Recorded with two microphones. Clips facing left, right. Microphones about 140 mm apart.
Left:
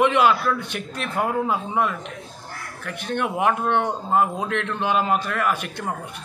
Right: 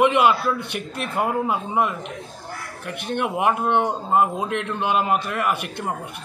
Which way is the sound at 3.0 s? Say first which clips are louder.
Even; 10° right (ahead or behind).